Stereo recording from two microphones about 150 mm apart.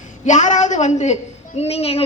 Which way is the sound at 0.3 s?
55° left (ahead or behind).